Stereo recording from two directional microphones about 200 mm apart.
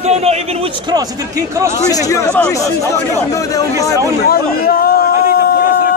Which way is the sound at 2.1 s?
10° left (ahead or behind).